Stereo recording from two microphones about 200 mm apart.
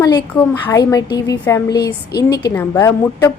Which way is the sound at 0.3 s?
10° left (ahead or behind).